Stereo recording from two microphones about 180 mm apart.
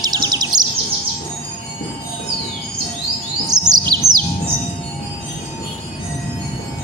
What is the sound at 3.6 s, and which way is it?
Chirp, 20° right (ahead or behind).